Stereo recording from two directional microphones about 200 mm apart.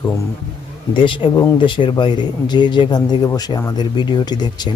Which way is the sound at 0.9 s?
25° left (ahead or behind).